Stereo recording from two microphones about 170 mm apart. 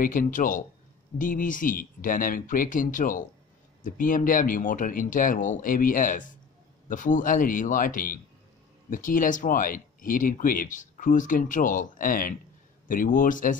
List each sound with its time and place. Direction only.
0.0 s speech: 55° left (ahead or behind)